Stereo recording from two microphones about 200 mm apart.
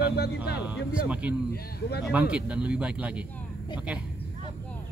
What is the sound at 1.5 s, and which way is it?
Speech, 55° left (ahead or behind).